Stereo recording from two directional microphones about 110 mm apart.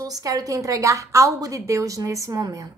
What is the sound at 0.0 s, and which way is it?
A woman's voice, 35° right (ahead or behind).